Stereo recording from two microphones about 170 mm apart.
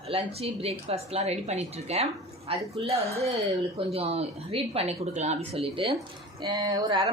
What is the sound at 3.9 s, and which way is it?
Speech, 35° right (ahead or behind).